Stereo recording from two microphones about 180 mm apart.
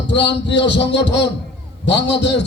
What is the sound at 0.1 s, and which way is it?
Music, 75° left (ahead or behind).